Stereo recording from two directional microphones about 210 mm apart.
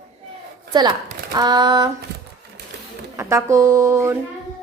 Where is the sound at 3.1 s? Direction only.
15° right (ahead or behind).